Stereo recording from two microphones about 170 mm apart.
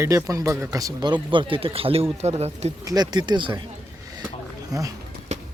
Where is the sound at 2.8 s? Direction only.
25° right (ahead or behind).